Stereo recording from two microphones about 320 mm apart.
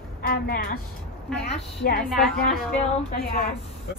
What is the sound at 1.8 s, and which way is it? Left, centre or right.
Speech, left.